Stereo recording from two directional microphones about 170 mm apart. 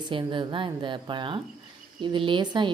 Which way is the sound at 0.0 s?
30° right (ahead or behind).